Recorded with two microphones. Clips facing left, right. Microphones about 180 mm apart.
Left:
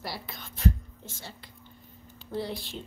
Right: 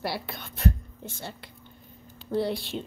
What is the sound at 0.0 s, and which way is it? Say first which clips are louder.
A woman's voice: right 6 dB; 65° right (ahead or behind).